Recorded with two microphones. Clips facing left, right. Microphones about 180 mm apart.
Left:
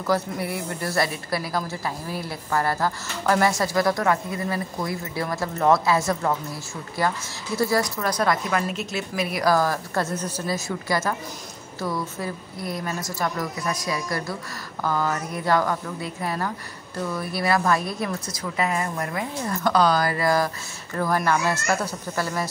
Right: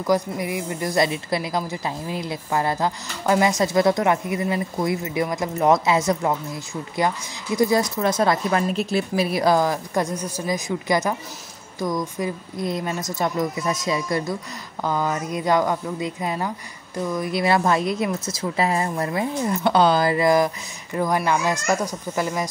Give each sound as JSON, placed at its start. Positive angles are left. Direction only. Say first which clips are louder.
{"t": 0.0, "sound": "a woman's voice", "louder": "right 3 dB", "side_deg": -15}